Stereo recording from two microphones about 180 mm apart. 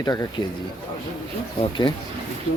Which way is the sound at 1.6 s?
25° left (ahead or behind).